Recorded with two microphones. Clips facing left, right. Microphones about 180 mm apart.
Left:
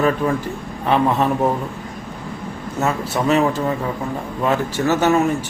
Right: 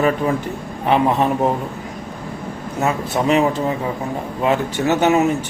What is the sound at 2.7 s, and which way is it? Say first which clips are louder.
Speech: right 1 dB; 15° right (ahead or behind).